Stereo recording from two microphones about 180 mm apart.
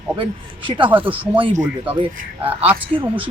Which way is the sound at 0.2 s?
30° right (ahead or behind).